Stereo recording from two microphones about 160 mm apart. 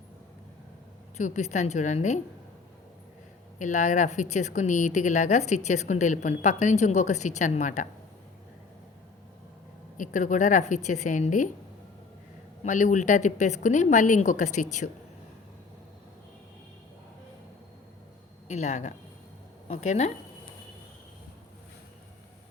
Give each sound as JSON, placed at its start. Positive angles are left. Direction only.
{"t": 1.1, "sound": "speech", "side_deg": 45}
{"t": 3.6, "sound": "speech", "side_deg": 50}
{"t": 10.0, "sound": "speech", "side_deg": 55}
{"t": 12.6, "sound": "speech", "side_deg": 50}
{"t": 18.4, "sound": "speech", "side_deg": 45}